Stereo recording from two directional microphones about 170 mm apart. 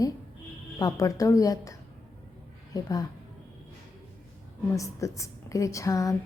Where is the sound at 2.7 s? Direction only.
20° left (ahead or behind).